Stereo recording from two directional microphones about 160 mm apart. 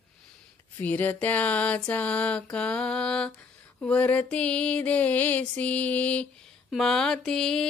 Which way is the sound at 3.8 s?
10° left (ahead or behind).